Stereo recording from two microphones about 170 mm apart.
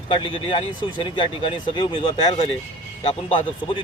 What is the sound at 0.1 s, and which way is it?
Speech, 30° left (ahead or behind).